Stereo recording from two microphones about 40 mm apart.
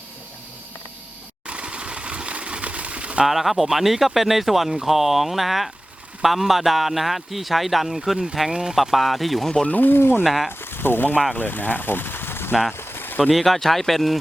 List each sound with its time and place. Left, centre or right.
1.5 s sewing machine: right
3.2 s speech: centre
8.7 s speech: centre
9.6 s speech: left
9.9 s speech: left
10.2 s speech: centre
10.6 s a sound: left
11.3 s speech: left
12.7 s a sound: left
13.3 s speech: centre